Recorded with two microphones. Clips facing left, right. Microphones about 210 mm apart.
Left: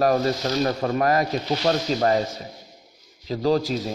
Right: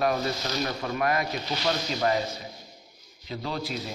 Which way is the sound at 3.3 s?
40° left (ahead or behind).